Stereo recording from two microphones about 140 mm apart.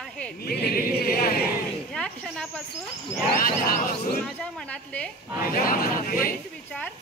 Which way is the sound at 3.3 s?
90° left.